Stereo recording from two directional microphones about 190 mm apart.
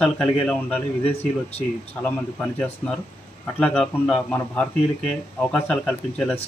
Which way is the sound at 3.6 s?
5° left (ahead or behind).